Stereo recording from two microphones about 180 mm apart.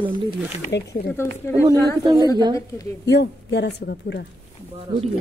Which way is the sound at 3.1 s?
70° left (ahead or behind).